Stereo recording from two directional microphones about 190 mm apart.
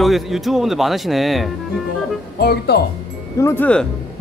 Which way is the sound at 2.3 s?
55° left (ahead or behind).